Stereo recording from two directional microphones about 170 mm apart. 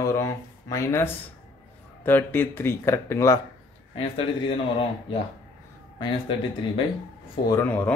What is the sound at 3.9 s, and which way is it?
Speech, 30° left (ahead or behind).